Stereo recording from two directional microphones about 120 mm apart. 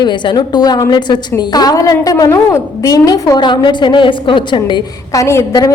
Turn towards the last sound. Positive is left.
turn(degrees=25)  # may be behind; listen again after turning